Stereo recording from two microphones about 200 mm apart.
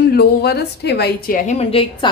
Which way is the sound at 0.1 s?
55° left (ahead or behind).